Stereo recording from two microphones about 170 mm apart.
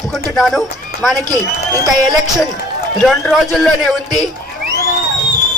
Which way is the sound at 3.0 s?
5° left (ahead or behind).